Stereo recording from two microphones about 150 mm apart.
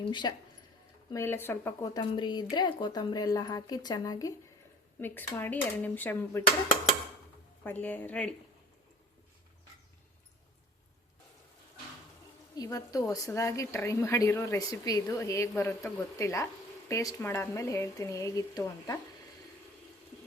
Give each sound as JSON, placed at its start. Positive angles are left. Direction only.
{"t": 0.1, "sound": "speech", "side_deg": 30}
{"t": 1.1, "sound": "speech", "side_deg": 15}
{"t": 4.9, "sound": "speech", "side_deg": 15}
{"t": 7.6, "sound": "speech", "side_deg": 10}
{"t": 12.5, "sound": "speech", "side_deg": 25}